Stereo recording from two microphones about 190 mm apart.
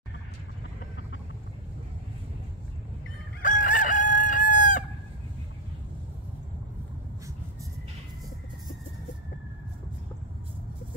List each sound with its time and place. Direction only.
3.4 s chicken: 45° left (ahead or behind)